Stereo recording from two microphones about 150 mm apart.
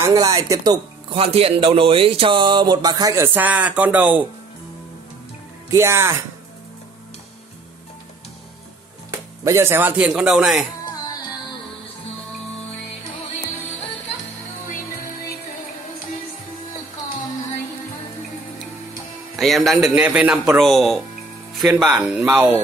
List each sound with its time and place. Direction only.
0.0 s speech: 25° right (ahead or behind)
1.1 s speech: 40° right (ahead or behind); by 3.3 s 25° right (ahead or behind)
3.3 s speech: 10° right (ahead or behind)
5.7 s speech: 20° right (ahead or behind)
9.1 s speech: 20° right (ahead or behind)
19.3 s a man's voice: centre (ahead or behind)